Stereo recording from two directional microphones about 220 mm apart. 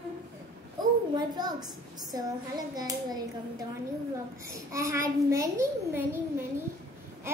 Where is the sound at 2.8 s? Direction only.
15° right (ahead or behind).